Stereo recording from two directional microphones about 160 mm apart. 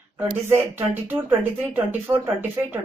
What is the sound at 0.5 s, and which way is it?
Speech, 15° right (ahead or behind).